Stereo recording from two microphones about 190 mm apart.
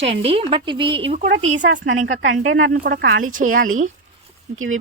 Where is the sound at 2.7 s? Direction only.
55° right (ahead or behind).